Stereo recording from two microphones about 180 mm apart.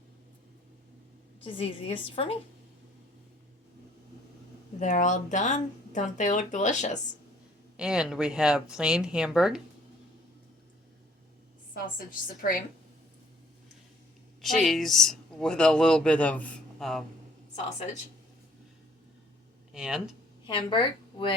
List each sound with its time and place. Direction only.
1.5 s a woman's voice: 30° left (ahead or behind)
4.8 s speech: 45° left (ahead or behind)
7.8 s speech: 5° right (ahead or behind)
11.7 s speech: 55° left (ahead or behind)
14.6 s speech: centre (ahead or behind)
19.7 s speech: 5° right (ahead or behind)
20.5 s a woman's voice: 30° left (ahead or behind)